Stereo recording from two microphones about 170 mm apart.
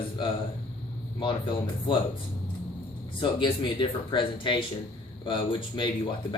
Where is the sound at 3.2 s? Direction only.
30° left (ahead or behind).